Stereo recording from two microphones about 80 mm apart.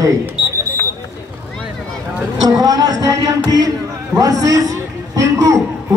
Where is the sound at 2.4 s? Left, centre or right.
Right.